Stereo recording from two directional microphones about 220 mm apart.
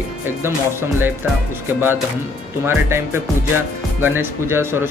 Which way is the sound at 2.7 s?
10° right (ahead or behind).